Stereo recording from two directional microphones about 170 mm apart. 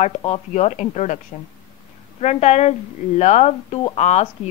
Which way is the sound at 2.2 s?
40° left (ahead or behind).